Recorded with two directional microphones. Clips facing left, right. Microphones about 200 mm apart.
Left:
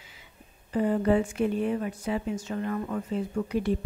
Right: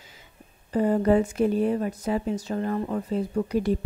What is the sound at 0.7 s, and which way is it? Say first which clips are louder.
A woman's voice: right 3 dB; 40° right (ahead or behind).